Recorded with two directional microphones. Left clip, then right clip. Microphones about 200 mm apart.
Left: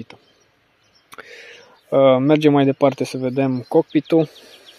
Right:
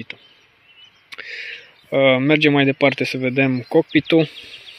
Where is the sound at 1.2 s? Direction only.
10° left (ahead or behind).